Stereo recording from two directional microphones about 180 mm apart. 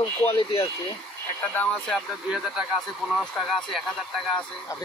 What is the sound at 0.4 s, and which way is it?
Speech, 30° left (ahead or behind).